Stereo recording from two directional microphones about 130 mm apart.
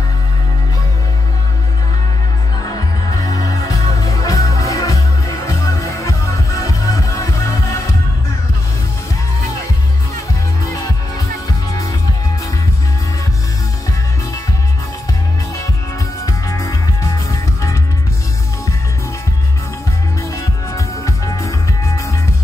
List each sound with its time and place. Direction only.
3.3 s music: 25° left (ahead or behind)
10.6 s music: 25° left (ahead or behind)
16.3 s music: 25° left (ahead or behind)
20.7 s music: 25° left (ahead or behind)